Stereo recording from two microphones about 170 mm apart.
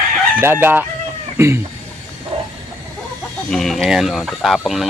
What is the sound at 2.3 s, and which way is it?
Train, 30° right (ahead or behind).